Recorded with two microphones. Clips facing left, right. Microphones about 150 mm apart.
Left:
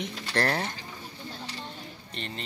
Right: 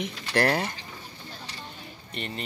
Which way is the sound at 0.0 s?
5° right (ahead or behind).